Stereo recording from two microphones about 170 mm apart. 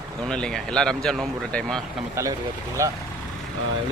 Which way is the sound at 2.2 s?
15° right (ahead or behind).